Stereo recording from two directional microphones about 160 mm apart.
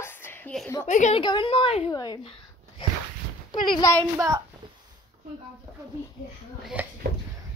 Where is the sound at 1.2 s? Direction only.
30° left (ahead or behind).